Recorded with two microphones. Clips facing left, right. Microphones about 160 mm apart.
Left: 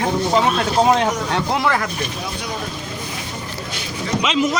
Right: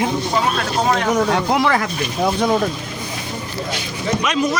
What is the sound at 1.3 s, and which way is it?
Speech, 10° right (ahead or behind).